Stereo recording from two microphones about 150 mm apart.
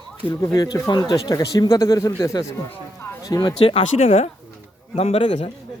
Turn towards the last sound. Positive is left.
turn(degrees=45)  # may be behind; listen again after turning